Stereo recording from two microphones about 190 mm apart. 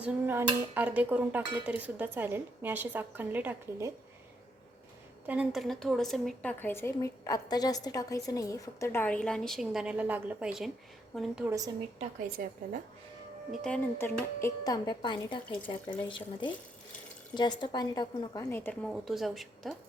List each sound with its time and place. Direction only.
0.0 s speech: 10° right (ahead or behind)
5.2 s a woman's voice: 5° right (ahead or behind)
11.4 s speech: 15° right (ahead or behind)
12.4 s speech: 50° right (ahead or behind)
13.5 s a woman's voice: 5° left (ahead or behind)
14.6 s a woman's voice: 20° left (ahead or behind)
18.9 s a woman's voice: centre (ahead or behind)